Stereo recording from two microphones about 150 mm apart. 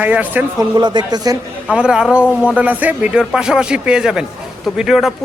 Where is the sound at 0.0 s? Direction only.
10° right (ahead or behind).